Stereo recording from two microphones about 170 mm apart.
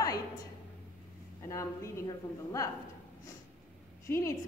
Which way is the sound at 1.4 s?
15° left (ahead or behind).